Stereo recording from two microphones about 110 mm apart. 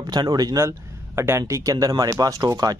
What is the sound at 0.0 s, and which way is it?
Speech, 40° right (ahead or behind).